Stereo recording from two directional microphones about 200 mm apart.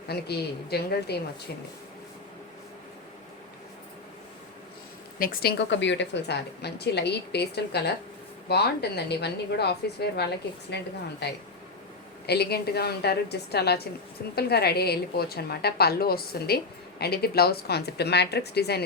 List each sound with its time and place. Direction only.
0.1 s a woman's voice: 55° left (ahead or behind)
5.2 s a woman's voice: 50° left (ahead or behind)